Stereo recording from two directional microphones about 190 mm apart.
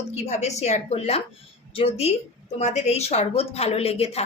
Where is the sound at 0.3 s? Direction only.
35° left (ahead or behind).